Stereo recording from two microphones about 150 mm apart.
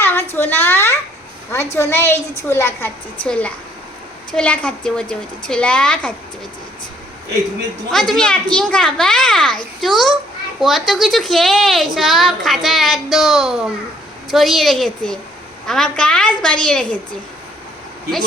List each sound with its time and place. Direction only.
0.0 s a sound: 15° left (ahead or behind)
0.3 s a woman's voice: 15° left (ahead or behind)
4.4 s a woman's voice: 5° left (ahead or behind)
7.9 s a woman's voice: 5° left (ahead or behind)